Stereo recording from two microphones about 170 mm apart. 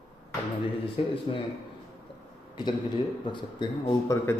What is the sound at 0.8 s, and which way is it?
Speech, 30° left (ahead or behind).